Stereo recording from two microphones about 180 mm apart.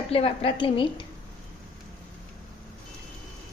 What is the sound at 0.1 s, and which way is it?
Speech, 30° left (ahead or behind).